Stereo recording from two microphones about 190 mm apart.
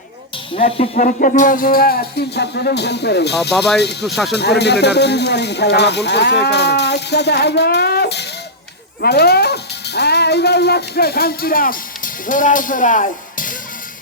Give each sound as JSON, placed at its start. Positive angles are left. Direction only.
{"t": 0.5, "sound": "speech", "side_deg": 30}
{"t": 0.9, "sound": "music", "side_deg": 45}
{"t": 4.0, "sound": "speech", "side_deg": 0}
{"t": 4.4, "sound": "speech", "side_deg": 60}